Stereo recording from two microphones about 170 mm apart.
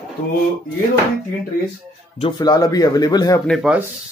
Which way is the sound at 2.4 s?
20° left (ahead or behind).